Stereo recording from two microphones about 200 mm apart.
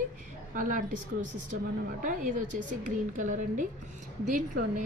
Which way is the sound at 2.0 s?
40° right (ahead or behind).